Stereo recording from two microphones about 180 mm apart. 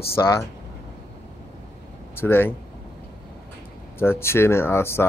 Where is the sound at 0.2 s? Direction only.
20° left (ahead or behind).